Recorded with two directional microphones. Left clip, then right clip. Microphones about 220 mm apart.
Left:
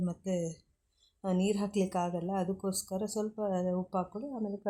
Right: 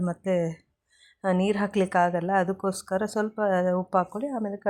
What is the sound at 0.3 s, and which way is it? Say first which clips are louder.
A woman's voice: right 10 dB; 20° right (ahead or behind).